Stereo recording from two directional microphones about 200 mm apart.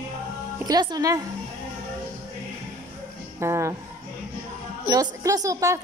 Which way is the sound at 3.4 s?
15° right (ahead or behind).